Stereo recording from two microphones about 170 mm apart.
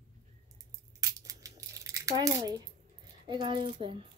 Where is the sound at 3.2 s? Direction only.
25° right (ahead or behind).